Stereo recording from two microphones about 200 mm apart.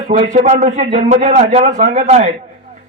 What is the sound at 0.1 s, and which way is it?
A man's voice, 35° right (ahead or behind).